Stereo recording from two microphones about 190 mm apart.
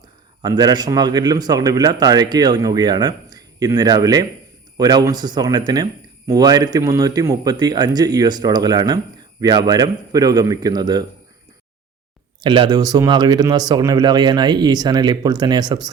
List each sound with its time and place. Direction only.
0.4 s speech: 20° right (ahead or behind)
12.4 s speech: 25° right (ahead or behind)